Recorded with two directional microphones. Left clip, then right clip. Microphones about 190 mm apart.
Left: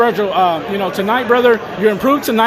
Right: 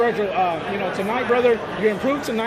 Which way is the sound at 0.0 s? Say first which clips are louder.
Left 7 dB; 45° left (ahead or behind).